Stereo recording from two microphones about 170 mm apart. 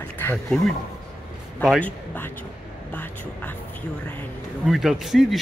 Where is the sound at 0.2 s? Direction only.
10° left (ahead or behind).